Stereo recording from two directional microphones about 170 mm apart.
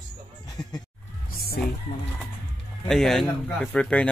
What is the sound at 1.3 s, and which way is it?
Music, 60° left (ahead or behind).